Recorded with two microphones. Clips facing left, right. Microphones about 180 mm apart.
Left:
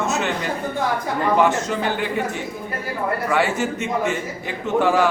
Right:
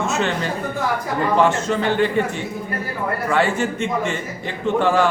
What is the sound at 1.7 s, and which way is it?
Speech, 10° left (ahead or behind).